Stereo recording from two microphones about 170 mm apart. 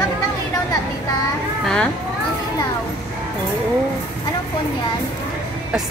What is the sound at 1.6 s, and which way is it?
Speech, 5° left (ahead or behind).